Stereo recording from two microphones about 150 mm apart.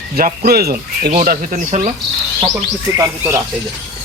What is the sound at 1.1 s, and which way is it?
Speech, 60° right (ahead or behind).